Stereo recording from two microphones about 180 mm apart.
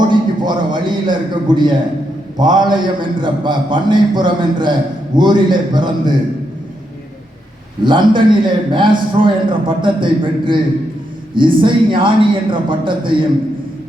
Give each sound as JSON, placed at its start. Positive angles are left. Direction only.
{"t": 0.1, "sound": "a sound", "side_deg": -25}
{"t": 2.4, "sound": "a man's voice", "side_deg": -25}
{"t": 7.9, "sound": "a man's voice", "side_deg": -25}